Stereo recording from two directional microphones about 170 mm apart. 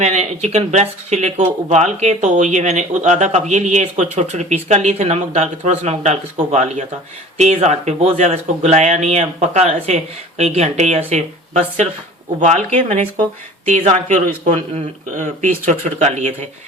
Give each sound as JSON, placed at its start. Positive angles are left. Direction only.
{"t": 0.0, "sound": "speech", "side_deg": -40}